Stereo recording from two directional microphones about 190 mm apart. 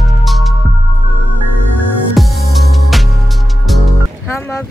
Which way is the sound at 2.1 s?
Centre (ahead or behind).